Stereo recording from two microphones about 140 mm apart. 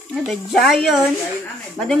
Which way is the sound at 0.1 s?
Centre (ahead or behind).